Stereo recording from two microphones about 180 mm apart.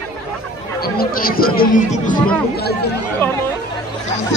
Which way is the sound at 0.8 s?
55° left (ahead or behind).